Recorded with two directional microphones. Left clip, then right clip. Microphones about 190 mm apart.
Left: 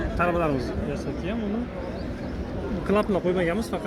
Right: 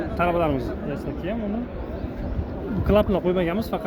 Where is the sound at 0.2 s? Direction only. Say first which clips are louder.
Right 2 dB; 35° right (ahead or behind).